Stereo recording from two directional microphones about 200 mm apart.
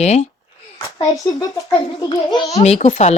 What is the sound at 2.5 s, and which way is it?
Speech, 35° left (ahead or behind).